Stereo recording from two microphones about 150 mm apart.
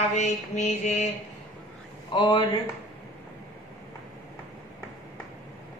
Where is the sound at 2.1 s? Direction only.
30° left (ahead or behind).